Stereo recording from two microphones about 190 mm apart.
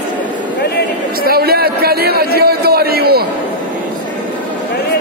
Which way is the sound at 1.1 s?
50° right (ahead or behind).